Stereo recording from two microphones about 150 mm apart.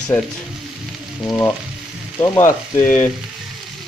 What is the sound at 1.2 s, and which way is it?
Speech, 25° left (ahead or behind).